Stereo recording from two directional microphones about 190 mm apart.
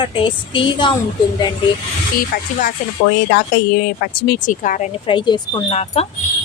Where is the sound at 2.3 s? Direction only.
55° left (ahead or behind).